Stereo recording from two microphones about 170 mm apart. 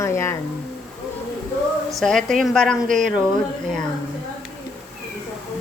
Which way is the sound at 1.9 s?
Centre (ahead or behind).